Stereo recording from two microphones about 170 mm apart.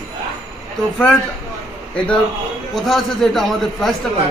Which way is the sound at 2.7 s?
Centre (ahead or behind).